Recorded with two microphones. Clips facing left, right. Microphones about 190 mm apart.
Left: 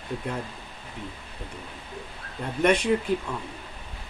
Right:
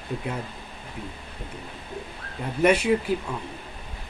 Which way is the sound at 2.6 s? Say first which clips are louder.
Right 2 dB; 5° right (ahead or behind).